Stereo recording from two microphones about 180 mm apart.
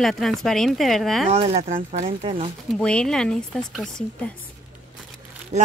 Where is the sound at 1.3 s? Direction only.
35° right (ahead or behind).